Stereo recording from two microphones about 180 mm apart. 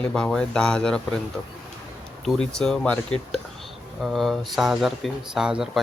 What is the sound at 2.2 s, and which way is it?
Speech, 5° left (ahead or behind).